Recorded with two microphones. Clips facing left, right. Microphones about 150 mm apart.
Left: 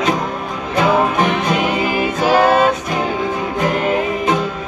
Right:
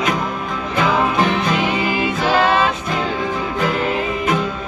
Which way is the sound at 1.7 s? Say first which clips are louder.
Left 2 dB; 45° left (ahead or behind).